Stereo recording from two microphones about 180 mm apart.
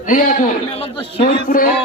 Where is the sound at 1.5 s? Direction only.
50° left (ahead or behind).